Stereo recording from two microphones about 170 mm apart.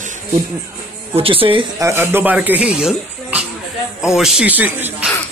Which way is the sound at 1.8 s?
15° right (ahead or behind).